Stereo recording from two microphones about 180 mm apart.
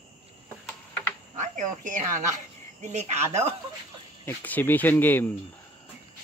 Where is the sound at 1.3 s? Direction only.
45° right (ahead or behind).